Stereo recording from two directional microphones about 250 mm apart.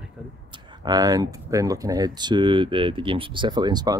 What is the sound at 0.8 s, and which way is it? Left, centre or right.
Speech, centre.